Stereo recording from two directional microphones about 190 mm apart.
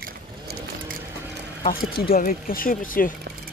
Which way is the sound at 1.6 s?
50° left (ahead or behind).